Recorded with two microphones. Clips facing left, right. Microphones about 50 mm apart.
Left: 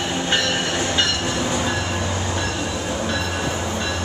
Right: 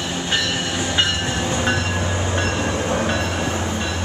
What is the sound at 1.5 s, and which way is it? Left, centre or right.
Train, right.